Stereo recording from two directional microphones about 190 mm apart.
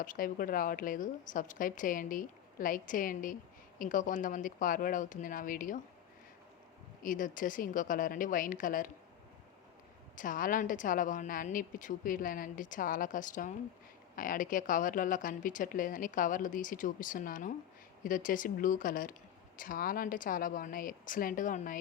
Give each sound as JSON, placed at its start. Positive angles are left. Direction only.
{"t": 0.0, "sound": "a woman's voice", "side_deg": 45}
{"t": 7.0, "sound": "a woman's voice", "side_deg": 45}
{"t": 10.2, "sound": "a woman's voice", "side_deg": 45}